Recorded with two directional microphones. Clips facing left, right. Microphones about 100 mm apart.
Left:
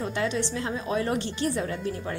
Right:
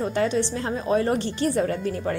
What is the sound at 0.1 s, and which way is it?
A woman's voice, 40° right (ahead or behind).